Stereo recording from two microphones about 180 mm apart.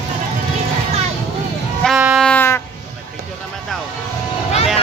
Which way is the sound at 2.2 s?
10° left (ahead or behind).